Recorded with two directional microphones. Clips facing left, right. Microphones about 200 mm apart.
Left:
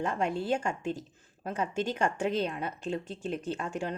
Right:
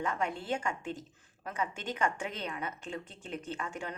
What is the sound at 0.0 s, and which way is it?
A woman's voice, 30° left (ahead or behind).